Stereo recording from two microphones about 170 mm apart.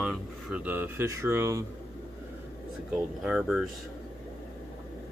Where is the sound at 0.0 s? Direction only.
5° right (ahead or behind).